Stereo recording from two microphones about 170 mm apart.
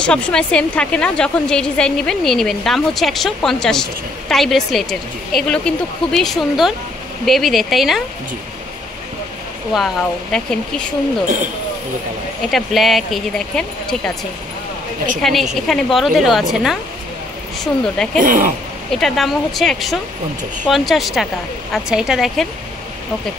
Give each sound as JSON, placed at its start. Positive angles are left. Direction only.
{"t": 0.0, "sound": "a woman's voice", "side_deg": 5}
{"t": 10.3, "sound": "a woman's voice", "side_deg": 5}
{"t": 12.4, "sound": "a woman's voice", "side_deg": 0}
{"t": 15.2, "sound": "a woman's voice", "side_deg": 0}
{"t": 17.8, "sound": "a woman's voice", "side_deg": 5}
{"t": 18.2, "sound": "speech", "side_deg": -55}
{"t": 18.9, "sound": "a woman's voice", "side_deg": 0}